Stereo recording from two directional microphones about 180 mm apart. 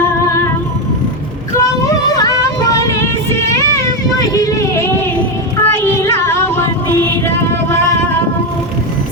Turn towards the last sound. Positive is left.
turn(degrees=15)  # may be behind; listen again after turning